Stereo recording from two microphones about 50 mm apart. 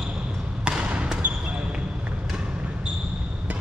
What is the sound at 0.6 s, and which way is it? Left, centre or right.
Basketball bounce, right.